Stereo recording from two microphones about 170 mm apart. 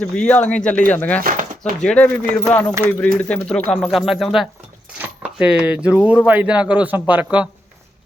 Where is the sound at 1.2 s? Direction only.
50° right (ahead or behind).